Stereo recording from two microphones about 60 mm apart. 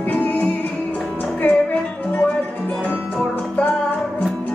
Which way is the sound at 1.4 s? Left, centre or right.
Left.